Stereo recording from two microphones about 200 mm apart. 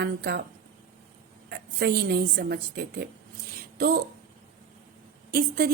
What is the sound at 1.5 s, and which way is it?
A woman's voice, 55° right (ahead or behind).